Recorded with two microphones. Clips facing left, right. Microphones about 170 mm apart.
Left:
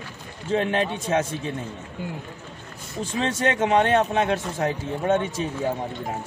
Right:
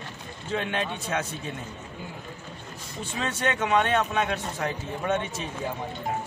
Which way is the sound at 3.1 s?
30° left (ahead or behind).